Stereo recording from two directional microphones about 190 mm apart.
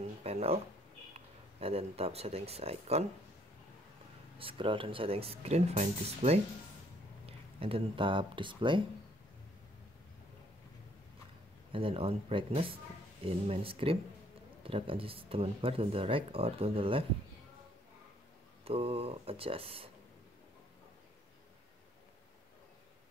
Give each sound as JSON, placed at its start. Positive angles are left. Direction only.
{"t": 0.2, "sound": "speech", "side_deg": -30}
{"t": 4.4, "sound": "speech", "side_deg": -30}
{"t": 11.7, "sound": "speech", "side_deg": -30}
{"t": 18.6, "sound": "speech", "side_deg": -30}